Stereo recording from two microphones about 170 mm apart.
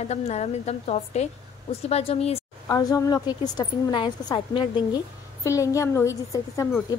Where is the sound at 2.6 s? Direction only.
20° left (ahead or behind).